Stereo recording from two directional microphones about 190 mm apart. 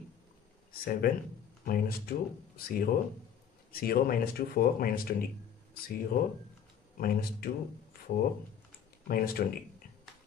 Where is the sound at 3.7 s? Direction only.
50° left (ahead or behind).